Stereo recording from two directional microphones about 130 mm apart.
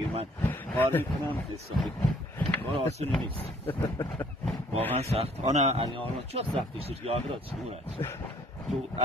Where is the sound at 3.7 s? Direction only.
35° left (ahead or behind).